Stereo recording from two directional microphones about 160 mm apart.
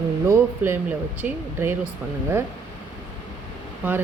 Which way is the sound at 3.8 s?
10° right (ahead or behind).